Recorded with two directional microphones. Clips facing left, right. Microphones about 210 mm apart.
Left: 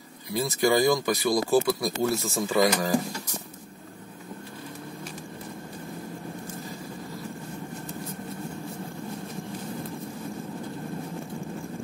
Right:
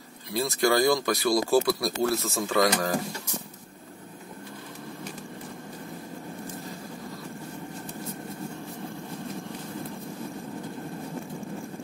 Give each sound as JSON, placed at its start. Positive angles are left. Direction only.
{"t": 0.3, "sound": "speech", "side_deg": 0}